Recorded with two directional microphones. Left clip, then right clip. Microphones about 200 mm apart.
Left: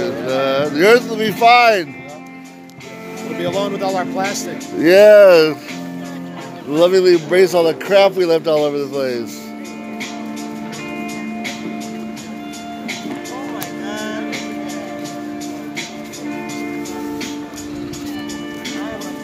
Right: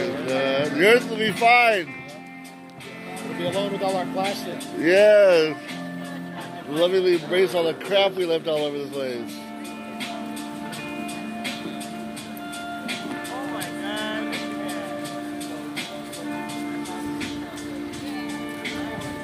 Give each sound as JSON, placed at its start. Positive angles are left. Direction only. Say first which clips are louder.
{"t": 0.3, "sound": "speech", "louder": "left 6 dB", "side_deg": 15}
{"t": 3.3, "sound": "speech", "louder": "left 6 dB", "side_deg": 45}
{"t": 4.7, "sound": "speech", "louder": "left 8 dB", "side_deg": 25}
{"t": 6.7, "sound": "speech", "louder": "left 8 dB", "side_deg": 35}
{"t": 13.8, "sound": "music", "louder": "left 3 dB", "side_deg": 50}